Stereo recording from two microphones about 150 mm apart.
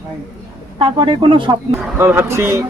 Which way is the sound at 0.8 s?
35° right (ahead or behind).